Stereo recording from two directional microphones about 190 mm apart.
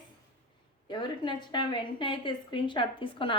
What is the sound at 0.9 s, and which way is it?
A woman's voice, 25° left (ahead or behind).